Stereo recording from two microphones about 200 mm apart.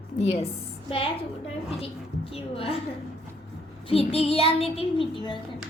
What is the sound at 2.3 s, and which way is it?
Child singing, 30° left (ahead or behind).